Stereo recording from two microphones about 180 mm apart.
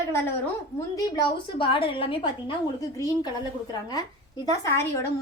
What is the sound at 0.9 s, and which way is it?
A woman's voice, 25° left (ahead or behind).